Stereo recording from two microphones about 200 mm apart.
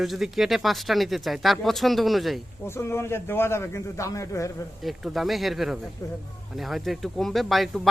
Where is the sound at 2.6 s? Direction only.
10° left (ahead or behind).